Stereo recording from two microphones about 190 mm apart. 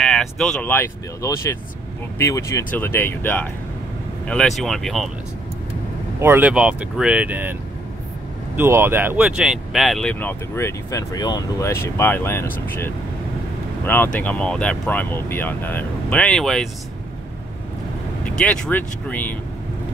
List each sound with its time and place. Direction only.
0.0 s speech: centre (ahead or behind)
6.2 s speech: 10° right (ahead or behind)
8.5 s speech: 10° right (ahead or behind); by 12.4 s 10° left (ahead or behind)
13.8 s speech: 10° left (ahead or behind)
18.2 s speech: 5° left (ahead or behind)